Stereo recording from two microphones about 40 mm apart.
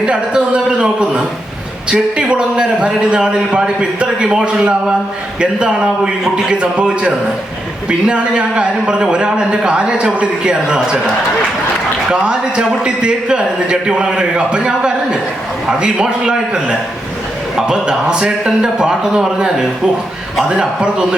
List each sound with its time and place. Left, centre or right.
0.0 s a man's voice: right
12.1 s a man's voice: right
20.5 s a man's voice: right